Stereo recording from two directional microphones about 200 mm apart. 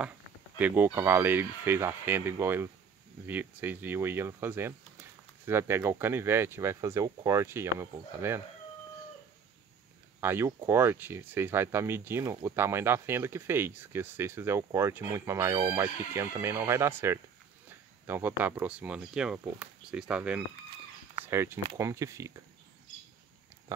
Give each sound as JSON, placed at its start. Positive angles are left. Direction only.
{"t": 0.6, "sound": "speech", "side_deg": -10}
{"t": 10.2, "sound": "speech", "side_deg": -10}